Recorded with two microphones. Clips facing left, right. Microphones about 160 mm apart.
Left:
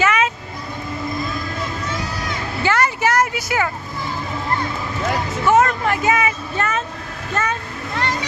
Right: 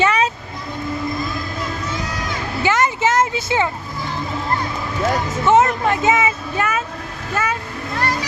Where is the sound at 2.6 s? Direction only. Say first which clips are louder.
Right 1 dB; 20° right (ahead or behind).